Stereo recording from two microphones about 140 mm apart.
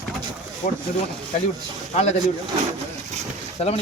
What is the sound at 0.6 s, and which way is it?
Speech, 50° left (ahead or behind).